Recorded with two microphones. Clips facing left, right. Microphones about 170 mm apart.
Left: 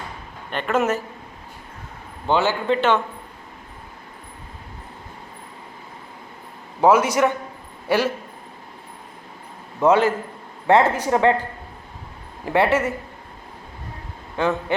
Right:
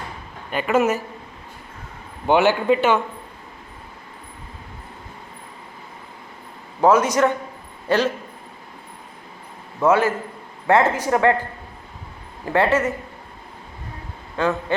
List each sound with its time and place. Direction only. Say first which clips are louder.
0.5 s speech: right 2 dB; 5° right (ahead or behind)
2.2 s speech: right 4 dB; 15° right (ahead or behind)
6.8 s speech: even; 10° left (ahead or behind)
9.8 s speech: left 1 dB; 15° left (ahead or behind)
12.5 s speech: even; 15° left (ahead or behind)
14.3 s speech: even; 15° left (ahead or behind)